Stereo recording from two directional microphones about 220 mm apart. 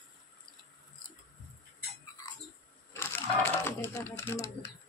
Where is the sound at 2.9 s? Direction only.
10° left (ahead or behind).